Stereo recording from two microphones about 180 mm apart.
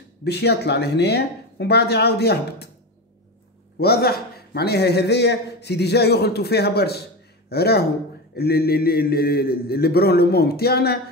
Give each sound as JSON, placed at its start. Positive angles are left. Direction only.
{"t": 0.2, "sound": "a man's voice", "side_deg": 65}
{"t": 3.7, "sound": "a man's voice", "side_deg": 60}